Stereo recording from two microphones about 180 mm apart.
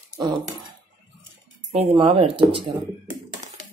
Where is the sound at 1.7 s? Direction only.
35° right (ahead or behind).